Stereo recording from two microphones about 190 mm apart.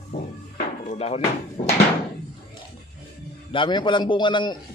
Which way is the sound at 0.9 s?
35° left (ahead or behind).